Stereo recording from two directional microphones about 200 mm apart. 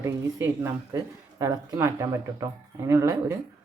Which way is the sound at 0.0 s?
15° right (ahead or behind).